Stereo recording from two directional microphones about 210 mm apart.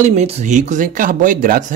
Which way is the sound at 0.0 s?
30° right (ahead or behind).